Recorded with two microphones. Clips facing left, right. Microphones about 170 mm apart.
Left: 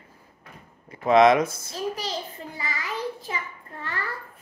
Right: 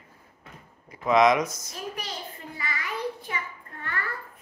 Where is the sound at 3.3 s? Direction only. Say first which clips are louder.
Left 1 dB; 30° left (ahead or behind).